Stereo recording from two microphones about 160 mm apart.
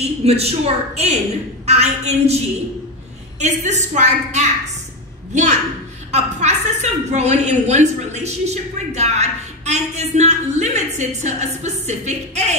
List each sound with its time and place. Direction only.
0.2 s a woman's voice: 40° right (ahead or behind)